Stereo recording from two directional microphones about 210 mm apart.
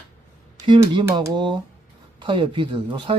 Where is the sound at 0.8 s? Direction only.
15° right (ahead or behind).